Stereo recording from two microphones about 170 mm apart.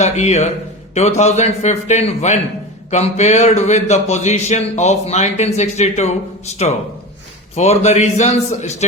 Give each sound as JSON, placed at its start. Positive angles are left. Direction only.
{"t": 0.0, "sound": "speech", "side_deg": 40}